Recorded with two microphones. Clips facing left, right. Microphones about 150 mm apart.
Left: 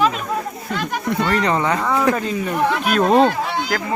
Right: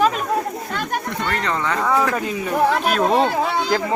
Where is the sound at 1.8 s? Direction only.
5° right (ahead or behind).